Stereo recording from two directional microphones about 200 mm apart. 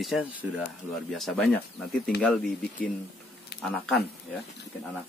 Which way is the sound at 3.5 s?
55° left (ahead or behind).